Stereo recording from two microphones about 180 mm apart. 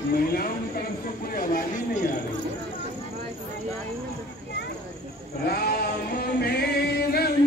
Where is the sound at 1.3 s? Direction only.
50° left (ahead or behind).